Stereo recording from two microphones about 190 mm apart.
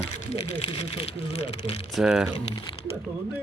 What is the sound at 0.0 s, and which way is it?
Speech, 30° left (ahead or behind).